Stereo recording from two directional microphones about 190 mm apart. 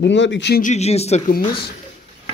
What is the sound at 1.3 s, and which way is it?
Speech, 55° left (ahead or behind).